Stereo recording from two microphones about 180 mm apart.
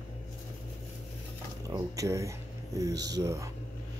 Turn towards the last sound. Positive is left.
turn(degrees=-15)  # may be behind; listen again after turning